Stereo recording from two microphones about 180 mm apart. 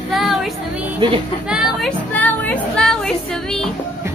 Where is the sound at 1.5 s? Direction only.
Centre (ahead or behind).